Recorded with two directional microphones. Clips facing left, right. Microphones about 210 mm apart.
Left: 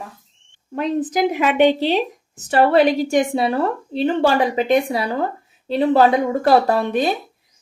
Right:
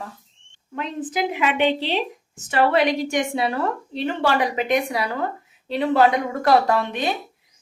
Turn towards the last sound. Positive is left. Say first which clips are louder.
# left 4 dB
turn(degrees=40)  # may be behind; listen again after turning